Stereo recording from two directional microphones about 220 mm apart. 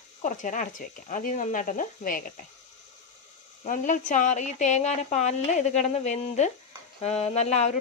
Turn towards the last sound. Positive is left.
turn(degrees=30)  # may be behind; listen again after turning